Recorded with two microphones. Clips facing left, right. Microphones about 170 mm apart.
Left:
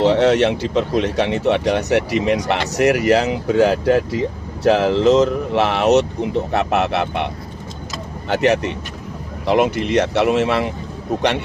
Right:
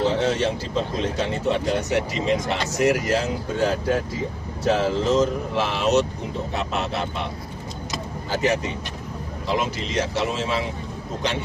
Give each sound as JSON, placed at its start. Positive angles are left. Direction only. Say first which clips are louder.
{"t": 0.0, "sound": "speech", "louder": "left 7 dB", "side_deg": 75}
{"t": 8.3, "sound": "speech", "louder": "left 6 dB", "side_deg": 70}